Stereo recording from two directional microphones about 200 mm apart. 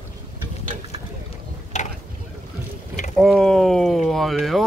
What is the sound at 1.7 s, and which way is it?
Mechanisms, 35° left (ahead or behind).